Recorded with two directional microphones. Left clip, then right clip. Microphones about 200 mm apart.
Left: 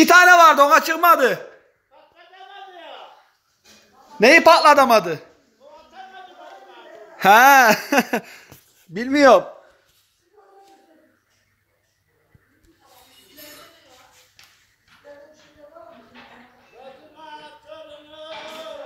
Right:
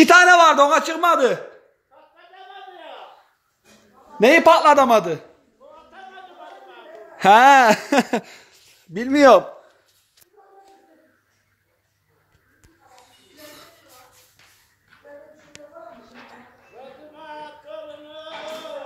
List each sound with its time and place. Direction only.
0.0 s a man's voice: 5° right (ahead or behind)
4.2 s a man's voice: centre (ahead or behind)
7.2 s a man's voice: 10° right (ahead or behind)
16.8 s a sound: 50° right (ahead or behind)